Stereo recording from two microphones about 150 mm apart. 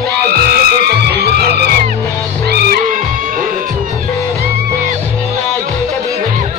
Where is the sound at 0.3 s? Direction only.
90° right.